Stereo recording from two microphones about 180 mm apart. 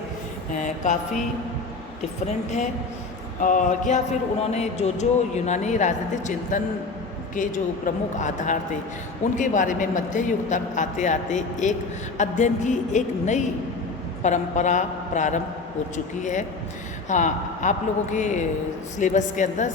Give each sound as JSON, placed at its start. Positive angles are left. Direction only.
{"t": 0.5, "sound": "a woman's voice", "side_deg": 45}
{"t": 2.2, "sound": "a woman's voice", "side_deg": 40}